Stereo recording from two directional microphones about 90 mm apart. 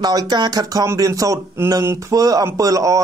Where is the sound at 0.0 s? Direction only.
50° right (ahead or behind).